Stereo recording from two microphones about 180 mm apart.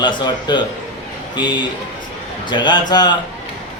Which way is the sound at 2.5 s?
25° left (ahead or behind).